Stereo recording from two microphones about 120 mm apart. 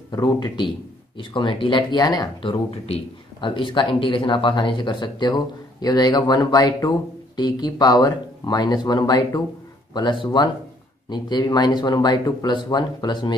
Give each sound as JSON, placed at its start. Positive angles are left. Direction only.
{"t": 0.1, "sound": "a man's voice", "side_deg": 35}
{"t": 2.9, "sound": "a man's voice", "side_deg": 45}